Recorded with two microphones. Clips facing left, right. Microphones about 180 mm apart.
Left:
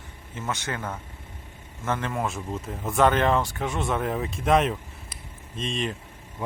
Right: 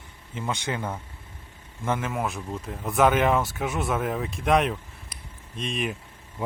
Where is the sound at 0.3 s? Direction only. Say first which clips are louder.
Right 2 dB; 15° right (ahead or behind).